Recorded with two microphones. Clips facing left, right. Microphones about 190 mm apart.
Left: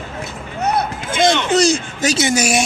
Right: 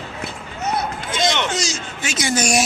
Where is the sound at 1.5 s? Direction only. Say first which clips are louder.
Left 11 dB; 60° left (ahead or behind).